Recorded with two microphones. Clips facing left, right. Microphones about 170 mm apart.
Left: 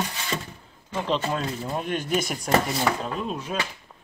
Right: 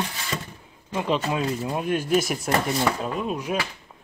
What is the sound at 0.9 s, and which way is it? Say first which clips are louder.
Speech: right 2 dB; 10° right (ahead or behind).